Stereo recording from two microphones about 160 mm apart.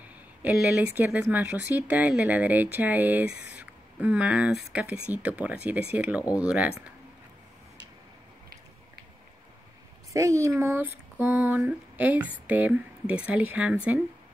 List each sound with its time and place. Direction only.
0.0 s a sound: 10° right (ahead or behind)
0.9 s speech: 10° right (ahead or behind)
10.1 s speech: 20° right (ahead or behind)